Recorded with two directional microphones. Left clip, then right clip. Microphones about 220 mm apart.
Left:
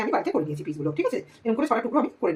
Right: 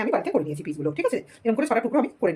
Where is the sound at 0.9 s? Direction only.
50° right (ahead or behind).